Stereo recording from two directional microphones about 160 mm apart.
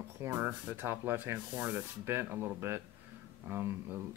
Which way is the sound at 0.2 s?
15° right (ahead or behind).